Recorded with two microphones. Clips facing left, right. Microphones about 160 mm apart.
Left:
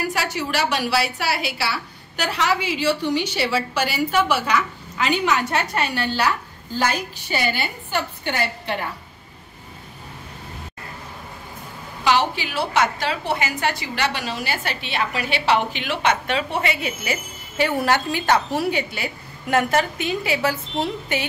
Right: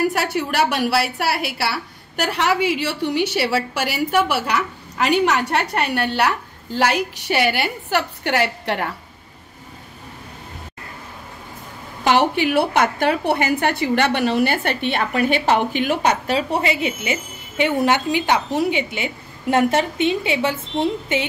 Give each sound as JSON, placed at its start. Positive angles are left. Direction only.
{"t": 0.1, "sound": "a woman's voice", "side_deg": -55}
{"t": 4.1, "sound": "a woman's voice", "side_deg": -65}
{"t": 12.0, "sound": "a woman's voice", "side_deg": -55}